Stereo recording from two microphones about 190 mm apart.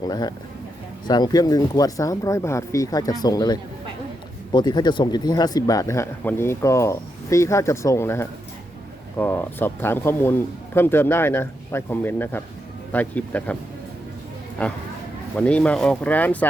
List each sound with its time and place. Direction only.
0.0 s speech: 20° left (ahead or behind)
14.6 s speech: 5° left (ahead or behind)